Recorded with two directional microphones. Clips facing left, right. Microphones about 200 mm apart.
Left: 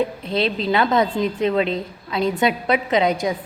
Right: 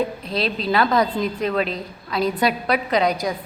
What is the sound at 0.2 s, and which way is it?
A woman's voice, 25° left (ahead or behind).